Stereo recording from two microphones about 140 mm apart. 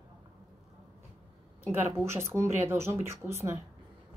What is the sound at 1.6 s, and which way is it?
Speech, 15° right (ahead or behind).